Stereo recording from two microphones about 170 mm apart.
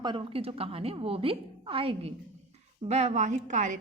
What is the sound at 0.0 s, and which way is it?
A woman's voice, 30° right (ahead or behind).